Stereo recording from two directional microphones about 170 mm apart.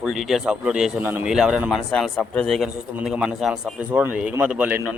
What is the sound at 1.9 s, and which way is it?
A man's voice, 5° left (ahead or behind).